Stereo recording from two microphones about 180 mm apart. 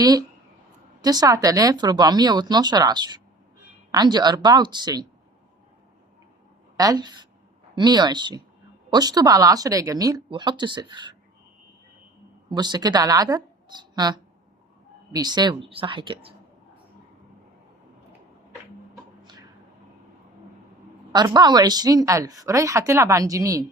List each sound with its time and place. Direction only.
0.0 s a woman's voice: 20° right (ahead or behind)
6.7 s a woman's voice: 20° right (ahead or behind)
12.5 s a woman's voice: 25° right (ahead or behind)
19.2 s a sound: 25° right (ahead or behind)
21.1 s a woman's voice: 20° right (ahead or behind)